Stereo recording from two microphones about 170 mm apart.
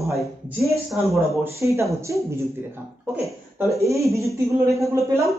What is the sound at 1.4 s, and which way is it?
Speech, 15° right (ahead or behind).